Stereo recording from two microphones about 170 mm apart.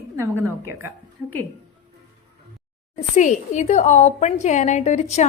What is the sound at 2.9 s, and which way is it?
A woman's voice, 45° left (ahead or behind).